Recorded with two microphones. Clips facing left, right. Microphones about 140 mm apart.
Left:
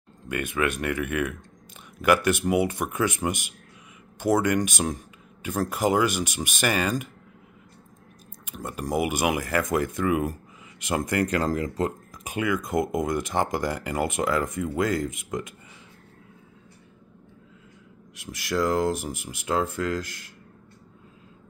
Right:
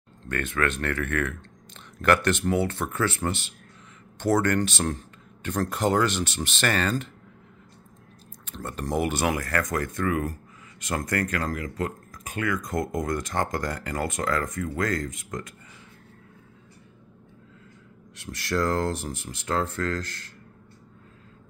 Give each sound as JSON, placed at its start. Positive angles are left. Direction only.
{"t": 0.2, "sound": "speech", "side_deg": 10}
{"t": 8.5, "sound": "speech", "side_deg": 10}
{"t": 11.4, "sound": "speech", "side_deg": 25}
{"t": 18.1, "sound": "speech", "side_deg": 10}